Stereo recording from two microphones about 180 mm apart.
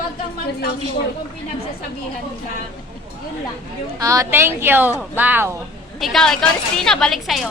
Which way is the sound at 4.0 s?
20° right (ahead or behind).